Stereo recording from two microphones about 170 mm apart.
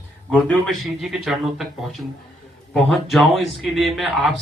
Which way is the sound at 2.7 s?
Centre (ahead or behind).